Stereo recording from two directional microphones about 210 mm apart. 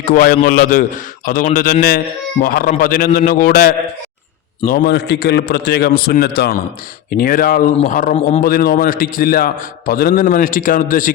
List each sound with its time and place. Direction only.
0.0 s a man's voice: 40° left (ahead or behind)
8.4 s a man's voice: 45° left (ahead or behind)